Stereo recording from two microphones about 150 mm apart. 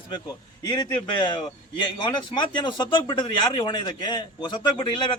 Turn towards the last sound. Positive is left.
turn(degrees=30)  # may be behind; listen again after turning